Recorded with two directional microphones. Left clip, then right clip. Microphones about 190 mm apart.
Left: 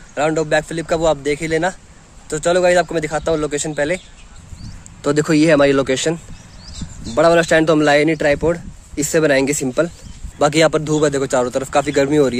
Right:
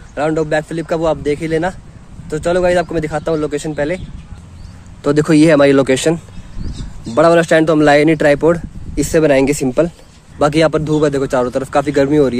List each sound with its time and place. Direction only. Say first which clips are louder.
0.1 s speech: right 1 dB; 25° left (ahead or behind)
5.0 s a man's voice: right 4 dB; centre (ahead or behind); by 8.6 s 15° right (ahead or behind)
8.9 s a man's voice: right 3 dB; centre (ahead or behind)
10.4 s a man's voice: right 1 dB; 5° left (ahead or behind)